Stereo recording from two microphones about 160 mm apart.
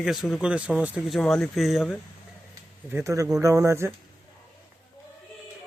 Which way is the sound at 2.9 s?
15° right (ahead or behind).